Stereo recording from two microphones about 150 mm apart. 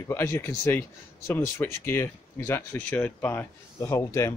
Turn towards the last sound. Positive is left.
turn(degrees=20)  # may be behind; listen again after turning